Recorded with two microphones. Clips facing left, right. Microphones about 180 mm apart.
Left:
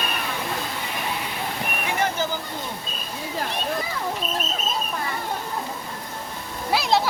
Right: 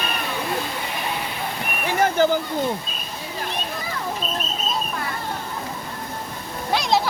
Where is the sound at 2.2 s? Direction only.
60° right (ahead or behind).